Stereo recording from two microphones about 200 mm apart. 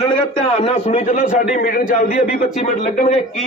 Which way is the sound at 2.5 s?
35° left (ahead or behind).